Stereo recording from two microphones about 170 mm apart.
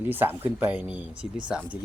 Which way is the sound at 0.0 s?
10° right (ahead or behind).